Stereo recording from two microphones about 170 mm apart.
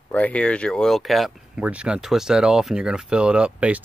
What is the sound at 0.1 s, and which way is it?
Speech, 10° left (ahead or behind).